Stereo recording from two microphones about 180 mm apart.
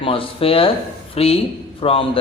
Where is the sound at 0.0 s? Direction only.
30° left (ahead or behind).